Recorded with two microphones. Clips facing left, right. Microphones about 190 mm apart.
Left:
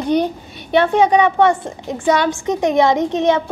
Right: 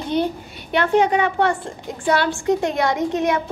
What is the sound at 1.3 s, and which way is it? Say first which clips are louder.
A woman's voice: left 5 dB; 20° left (ahead or behind).